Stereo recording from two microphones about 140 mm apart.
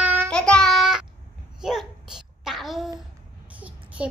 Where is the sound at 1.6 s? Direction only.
5° right (ahead or behind).